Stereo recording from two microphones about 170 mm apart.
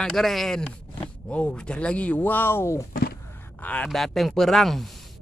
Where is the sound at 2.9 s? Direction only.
60° left (ahead or behind).